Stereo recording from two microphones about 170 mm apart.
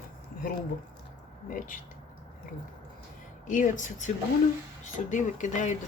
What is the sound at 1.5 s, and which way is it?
Speech, 50° left (ahead or behind).